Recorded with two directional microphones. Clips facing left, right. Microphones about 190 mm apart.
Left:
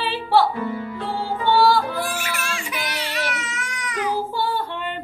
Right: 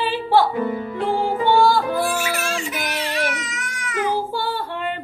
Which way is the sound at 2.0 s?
45° right (ahead or behind).